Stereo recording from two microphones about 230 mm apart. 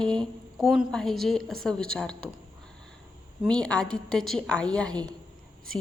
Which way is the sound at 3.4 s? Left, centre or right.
Centre.